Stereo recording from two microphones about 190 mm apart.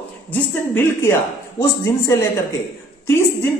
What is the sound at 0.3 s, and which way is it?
Speech, 10° left (ahead or behind).